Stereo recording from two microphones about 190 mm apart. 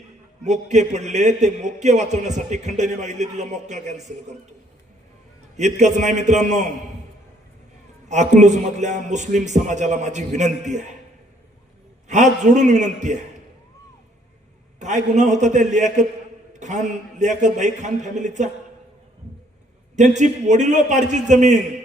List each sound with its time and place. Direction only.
0.4 s a man's voice: 40° right (ahead or behind)
5.5 s a man's voice: 35° right (ahead or behind)
8.0 s a man's voice: 40° right (ahead or behind)
12.0 s a man's voice: 40° right (ahead or behind)
14.8 s a man's voice: 40° right (ahead or behind)
20.0 s a man's voice: 40° right (ahead or behind)